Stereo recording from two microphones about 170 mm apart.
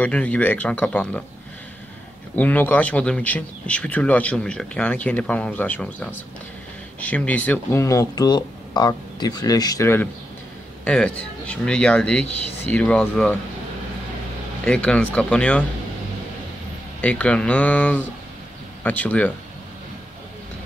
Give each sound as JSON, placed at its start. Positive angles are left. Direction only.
{"t": 0.0, "sound": "speech", "side_deg": 10}
{"t": 2.3, "sound": "speech", "side_deg": 10}
{"t": 10.8, "sound": "speech", "side_deg": 5}
{"t": 14.6, "sound": "speech", "side_deg": 5}
{"t": 17.0, "sound": "speech", "side_deg": 5}